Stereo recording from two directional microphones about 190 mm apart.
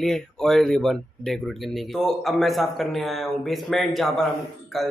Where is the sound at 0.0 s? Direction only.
Centre (ahead or behind).